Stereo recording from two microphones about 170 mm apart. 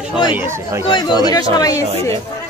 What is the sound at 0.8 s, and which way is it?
Speech, 30° left (ahead or behind).